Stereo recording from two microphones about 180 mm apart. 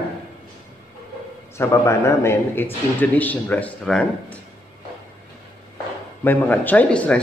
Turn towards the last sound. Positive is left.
turn(degrees=5)  # may be behind; listen again after turning